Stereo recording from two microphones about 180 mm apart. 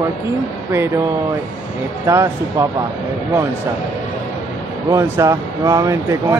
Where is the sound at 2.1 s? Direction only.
15° right (ahead or behind).